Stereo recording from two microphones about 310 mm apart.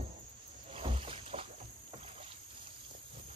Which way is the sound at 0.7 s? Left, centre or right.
Centre.